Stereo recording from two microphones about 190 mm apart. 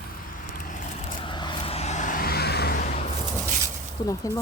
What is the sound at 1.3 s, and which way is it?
Vehicle, 25° left (ahead or behind).